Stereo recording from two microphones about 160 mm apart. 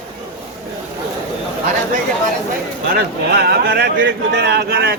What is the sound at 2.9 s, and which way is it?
Speech, 90° right.